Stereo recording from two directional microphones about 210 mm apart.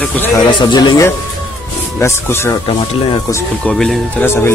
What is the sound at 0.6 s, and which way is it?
Speech, 20° left (ahead or behind).